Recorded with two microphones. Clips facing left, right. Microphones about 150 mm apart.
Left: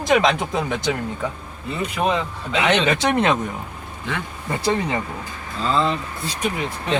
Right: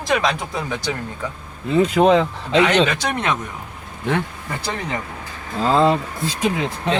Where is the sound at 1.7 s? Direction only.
90° right.